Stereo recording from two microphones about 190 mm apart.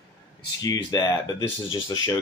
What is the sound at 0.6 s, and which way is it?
Speech, 20° left (ahead or behind).